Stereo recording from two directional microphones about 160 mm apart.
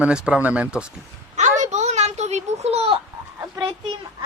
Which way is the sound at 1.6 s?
45° right (ahead or behind).